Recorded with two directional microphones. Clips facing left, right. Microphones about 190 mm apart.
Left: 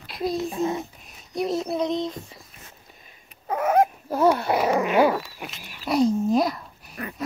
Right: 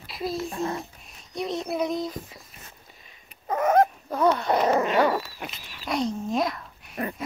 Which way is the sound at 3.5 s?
10° left (ahead or behind).